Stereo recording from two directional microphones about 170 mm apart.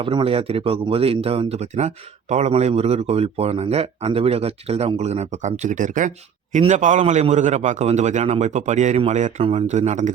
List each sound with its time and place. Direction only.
0.0 s a man's voice: 30° right (ahead or behind)